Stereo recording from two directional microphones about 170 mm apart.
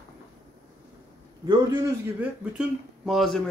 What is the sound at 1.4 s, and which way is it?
Speech, 15° right (ahead or behind).